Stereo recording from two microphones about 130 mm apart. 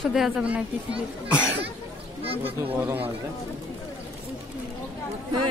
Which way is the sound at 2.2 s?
45° right (ahead or behind).